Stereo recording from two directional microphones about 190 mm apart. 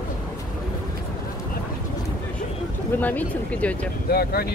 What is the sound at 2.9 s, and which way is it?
Speech, 10° left (ahead or behind).